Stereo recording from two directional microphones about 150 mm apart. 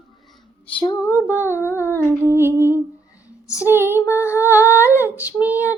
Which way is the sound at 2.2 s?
15° right (ahead or behind).